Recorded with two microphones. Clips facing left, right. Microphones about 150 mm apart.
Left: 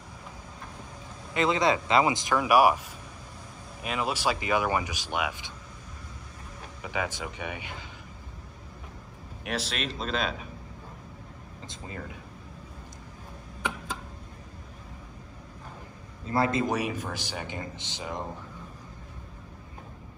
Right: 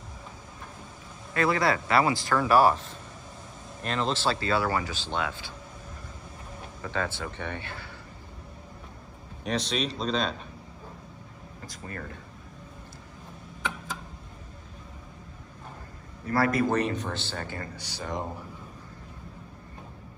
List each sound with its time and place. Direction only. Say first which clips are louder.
1.3 s speech: even; 20° left (ahead or behind)
6.8 s speech: right 1 dB; 15° left (ahead or behind)
9.4 s a man's voice: right 4 dB; 5° left (ahead or behind)
11.6 s speech: right 1 dB; 20° left (ahead or behind)
16.3 s a man's voice: right 1 dB; 20° left (ahead or behind)
16.7 s speech: right 3 dB; 10° left (ahead or behind)